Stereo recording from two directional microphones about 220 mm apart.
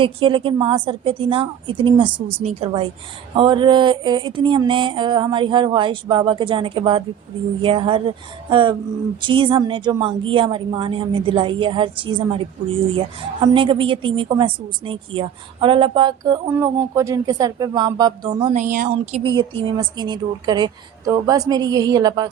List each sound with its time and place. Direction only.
0.0 s a woman's voice: 20° right (ahead or behind)